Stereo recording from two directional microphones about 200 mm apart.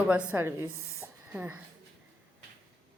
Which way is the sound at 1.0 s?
10° right (ahead or behind).